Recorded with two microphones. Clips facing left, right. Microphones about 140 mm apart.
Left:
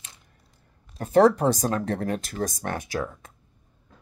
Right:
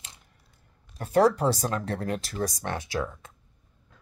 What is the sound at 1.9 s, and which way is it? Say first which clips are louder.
Speech: left 3 dB; 45° left (ahead or behind).